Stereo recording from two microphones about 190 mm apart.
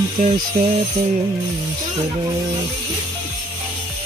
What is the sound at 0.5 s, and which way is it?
Music, 40° right (ahead or behind).